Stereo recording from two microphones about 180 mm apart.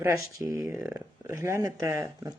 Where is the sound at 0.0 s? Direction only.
15° right (ahead or behind).